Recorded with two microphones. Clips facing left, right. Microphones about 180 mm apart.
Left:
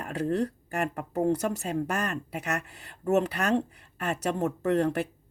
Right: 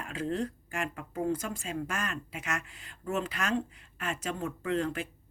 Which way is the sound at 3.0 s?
40° left (ahead or behind).